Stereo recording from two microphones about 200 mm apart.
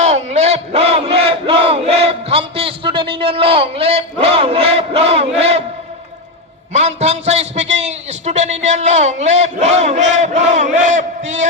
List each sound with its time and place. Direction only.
0.0 s battle cry: 35° right (ahead or behind)
6.7 s a man's voice: 35° right (ahead or behind)